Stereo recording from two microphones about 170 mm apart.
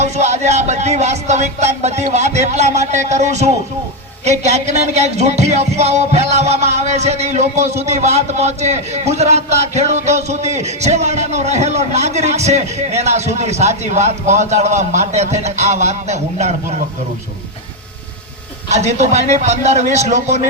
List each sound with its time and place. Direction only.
0.0 s music: 40° right (ahead or behind)
18.7 s a man's voice: 40° right (ahead or behind)